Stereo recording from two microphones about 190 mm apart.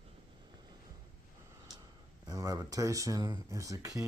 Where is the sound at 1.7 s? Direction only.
20° right (ahead or behind).